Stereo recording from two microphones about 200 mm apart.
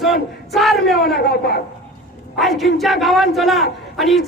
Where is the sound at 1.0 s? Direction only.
50° left (ahead or behind).